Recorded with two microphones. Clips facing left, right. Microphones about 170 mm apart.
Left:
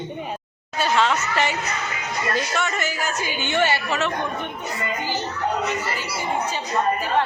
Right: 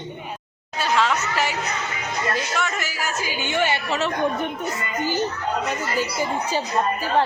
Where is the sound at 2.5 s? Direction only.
Centre (ahead or behind).